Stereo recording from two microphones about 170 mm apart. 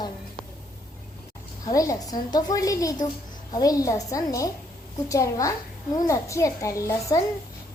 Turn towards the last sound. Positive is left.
turn(degrees=20)  # may be behind; listen again after turning